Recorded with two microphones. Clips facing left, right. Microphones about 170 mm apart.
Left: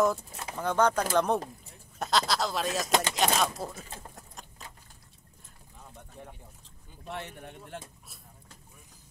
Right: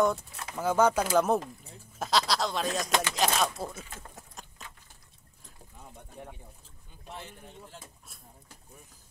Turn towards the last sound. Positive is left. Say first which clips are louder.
# left 5 dB
turn(degrees=70)  # may be behind; listen again after turning